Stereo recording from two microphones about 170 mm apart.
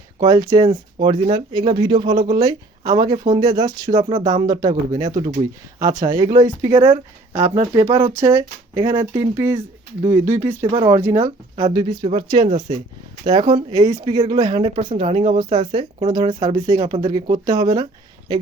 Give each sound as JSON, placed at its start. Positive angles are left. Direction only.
{"t": 0.2, "sound": "speech", "side_deg": -20}
{"t": 10.7, "sound": "speech", "side_deg": -35}
{"t": 10.9, "sound": "speech", "side_deg": -15}
{"t": 13.2, "sound": "speech", "side_deg": -25}